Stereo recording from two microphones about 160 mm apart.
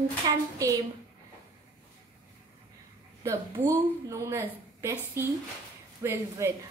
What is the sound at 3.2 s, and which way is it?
A woman's voice, 20° right (ahead or behind).